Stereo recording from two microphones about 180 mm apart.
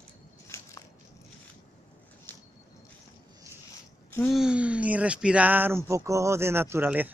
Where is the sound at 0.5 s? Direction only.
15° left (ahead or behind).